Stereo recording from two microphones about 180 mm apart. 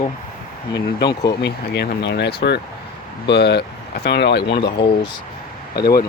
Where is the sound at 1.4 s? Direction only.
70° left (ahead or behind).